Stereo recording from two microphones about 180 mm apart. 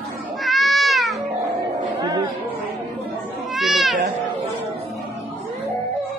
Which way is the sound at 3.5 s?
Centre (ahead or behind).